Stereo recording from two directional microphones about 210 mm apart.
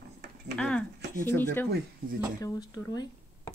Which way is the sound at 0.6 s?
5° left (ahead or behind).